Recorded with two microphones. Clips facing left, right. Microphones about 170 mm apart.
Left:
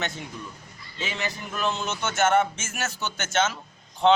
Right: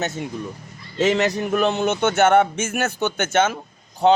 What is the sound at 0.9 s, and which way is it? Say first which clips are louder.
Speech: right 14 dB; 80° right.